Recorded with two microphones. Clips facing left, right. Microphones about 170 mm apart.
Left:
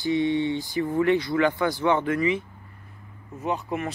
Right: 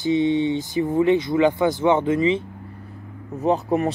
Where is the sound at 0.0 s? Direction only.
20° right (ahead or behind).